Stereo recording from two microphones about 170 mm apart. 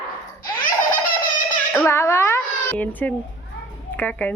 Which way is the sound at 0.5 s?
55° left (ahead or behind).